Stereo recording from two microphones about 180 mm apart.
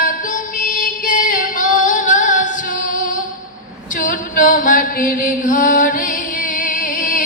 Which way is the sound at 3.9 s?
45° left (ahead or behind).